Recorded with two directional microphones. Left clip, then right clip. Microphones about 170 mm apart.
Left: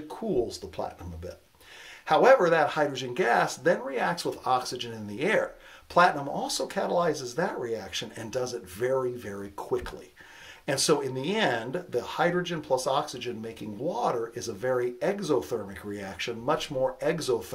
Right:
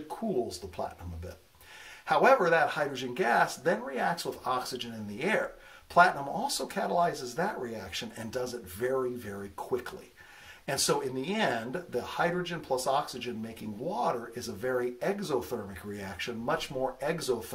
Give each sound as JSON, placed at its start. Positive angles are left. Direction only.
{"t": 2.0, "sound": "speech", "side_deg": 35}
{"t": 10.7, "sound": "speech", "side_deg": 35}